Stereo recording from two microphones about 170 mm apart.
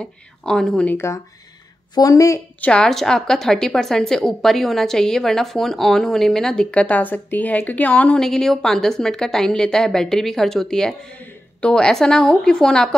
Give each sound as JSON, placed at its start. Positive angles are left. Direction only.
{"t": 0.0, "sound": "a woman's voice", "side_deg": 5}
{"t": 2.7, "sound": "a woman's voice", "side_deg": 5}